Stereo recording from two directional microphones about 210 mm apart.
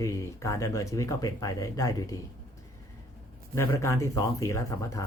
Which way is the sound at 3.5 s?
15° left (ahead or behind).